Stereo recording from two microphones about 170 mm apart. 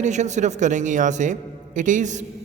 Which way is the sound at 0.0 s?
45° right (ahead or behind).